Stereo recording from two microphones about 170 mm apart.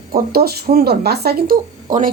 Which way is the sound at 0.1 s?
60° right (ahead or behind).